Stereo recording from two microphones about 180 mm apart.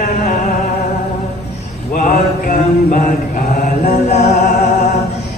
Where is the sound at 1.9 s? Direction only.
50° left (ahead or behind).